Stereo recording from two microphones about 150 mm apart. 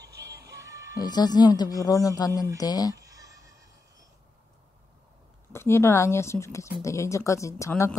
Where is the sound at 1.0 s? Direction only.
25° left (ahead or behind).